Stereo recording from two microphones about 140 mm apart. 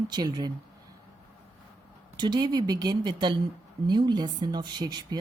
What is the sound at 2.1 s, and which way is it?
A woman's voice, 30° right (ahead or behind).